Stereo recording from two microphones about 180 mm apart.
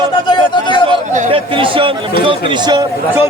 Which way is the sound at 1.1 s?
45° right (ahead or behind).